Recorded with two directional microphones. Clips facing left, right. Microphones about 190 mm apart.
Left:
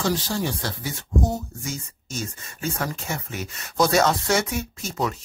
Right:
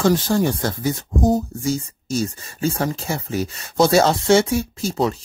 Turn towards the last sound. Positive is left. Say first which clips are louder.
# right 6 dB
turn(degrees=-30)  # may be behind; listen again after turning